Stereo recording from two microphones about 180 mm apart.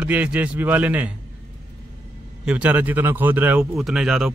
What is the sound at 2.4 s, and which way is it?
Speech, 5° right (ahead or behind).